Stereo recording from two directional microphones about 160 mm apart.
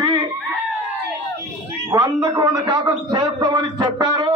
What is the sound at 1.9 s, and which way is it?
A man's voice, 25° right (ahead or behind).